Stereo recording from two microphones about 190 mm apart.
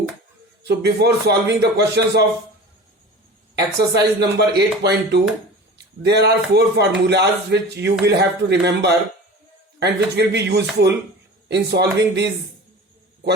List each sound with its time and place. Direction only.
0.6 s speech: 60° right (ahead or behind)
3.5 s speech: 60° right (ahead or behind)